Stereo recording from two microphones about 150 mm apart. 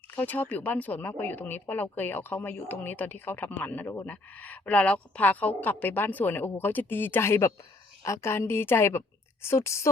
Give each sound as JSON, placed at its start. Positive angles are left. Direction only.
{"t": 0.2, "sound": "speech", "side_deg": 10}